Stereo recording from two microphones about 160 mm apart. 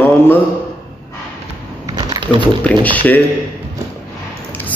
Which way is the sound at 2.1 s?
30° right (ahead or behind).